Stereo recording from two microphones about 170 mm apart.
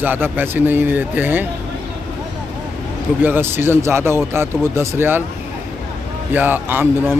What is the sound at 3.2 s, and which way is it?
Speech, 10° right (ahead or behind).